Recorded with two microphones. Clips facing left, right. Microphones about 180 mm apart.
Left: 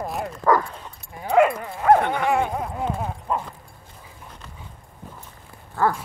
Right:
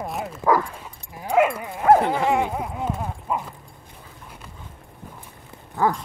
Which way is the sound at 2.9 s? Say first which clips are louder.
Left 1 dB; 5° left (ahead or behind).